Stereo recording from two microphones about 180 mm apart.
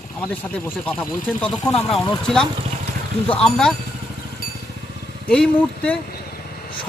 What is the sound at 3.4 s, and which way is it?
Speech, 5° left (ahead or behind).